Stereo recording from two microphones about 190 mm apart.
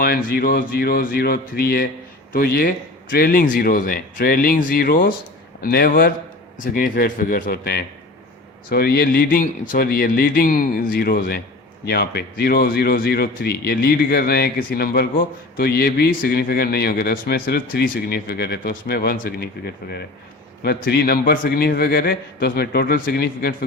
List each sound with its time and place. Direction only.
0.0 s a man's voice: 50° left (ahead or behind)